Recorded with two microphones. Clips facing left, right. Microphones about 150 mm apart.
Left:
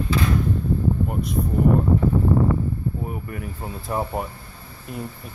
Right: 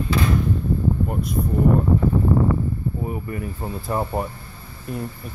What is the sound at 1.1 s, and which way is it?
Speech, centre (ahead or behind).